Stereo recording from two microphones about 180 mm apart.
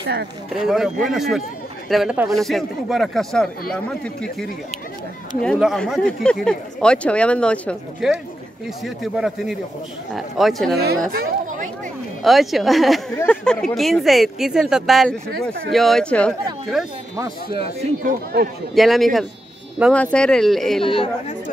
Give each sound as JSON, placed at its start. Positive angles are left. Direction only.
{"t": 0.0, "sound": "speech", "side_deg": -70}
{"t": 0.7, "sound": "speech", "side_deg": 0}
{"t": 12.2, "sound": "speech", "side_deg": 0}
{"t": 17.2, "sound": "speech", "side_deg": -30}
{"t": 18.3, "sound": "a man's voice", "side_deg": -60}
{"t": 18.8, "sound": "speech", "side_deg": 0}
{"t": 20.8, "sound": "speech", "side_deg": 30}